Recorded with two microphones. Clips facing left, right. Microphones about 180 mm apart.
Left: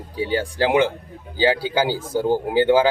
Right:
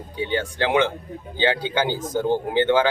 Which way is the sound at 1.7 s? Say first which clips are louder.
Left 2 dB; 10° left (ahead or behind).